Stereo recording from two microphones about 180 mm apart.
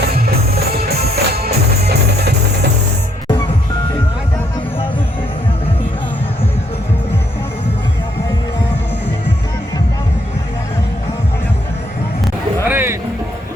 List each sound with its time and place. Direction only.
0.1 s music: 60° right (ahead or behind)
12.6 s music: 10° right (ahead or behind)